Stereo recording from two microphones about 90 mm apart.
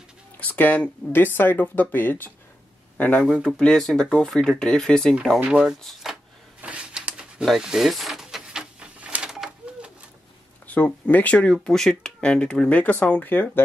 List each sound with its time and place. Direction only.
0.4 s speech: 20° left (ahead or behind)
3.4 s speech: 5° left (ahead or behind)
5.6 s speech: 5° right (ahead or behind)
6.6 s a sound: 10° right (ahead or behind)
10.7 s speech: 15° left (ahead or behind)